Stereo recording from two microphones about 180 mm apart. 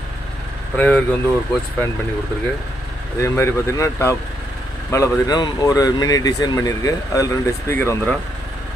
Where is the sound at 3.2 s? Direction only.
15° left (ahead or behind).